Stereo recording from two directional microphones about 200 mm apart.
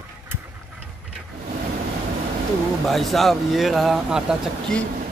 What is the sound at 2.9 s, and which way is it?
Speech, centre (ahead or behind).